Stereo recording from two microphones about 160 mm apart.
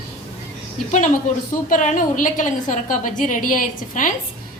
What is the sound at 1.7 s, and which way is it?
A woman's voice, 55° left (ahead or behind).